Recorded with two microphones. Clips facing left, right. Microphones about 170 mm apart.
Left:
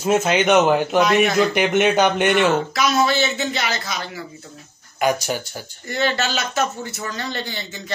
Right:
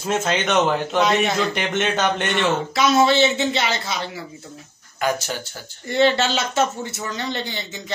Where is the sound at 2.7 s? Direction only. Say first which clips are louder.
Right 2 dB; 25° right (ahead or behind).